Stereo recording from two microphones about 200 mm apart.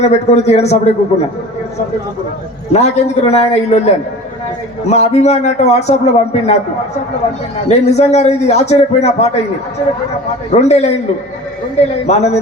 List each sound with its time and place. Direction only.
0.0 s a man's voice: 35° left (ahead or behind)
2.7 s a man's voice: 35° left (ahead or behind)
7.7 s a man's voice: 35° left (ahead or behind)
10.5 s a man's voice: 35° left (ahead or behind)
12.0 s a man's voice: 35° left (ahead or behind)